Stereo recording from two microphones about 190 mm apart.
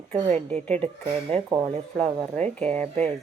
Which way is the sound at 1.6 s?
35° right (ahead or behind).